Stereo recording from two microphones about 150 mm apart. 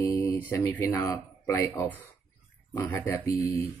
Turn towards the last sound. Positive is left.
turn(degrees=20)  # may be behind; listen again after turning